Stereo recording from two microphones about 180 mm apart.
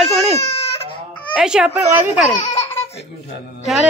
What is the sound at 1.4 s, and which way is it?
Speech, 5° right (ahead or behind).